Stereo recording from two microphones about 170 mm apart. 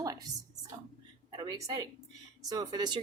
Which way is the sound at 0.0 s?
20° right (ahead or behind).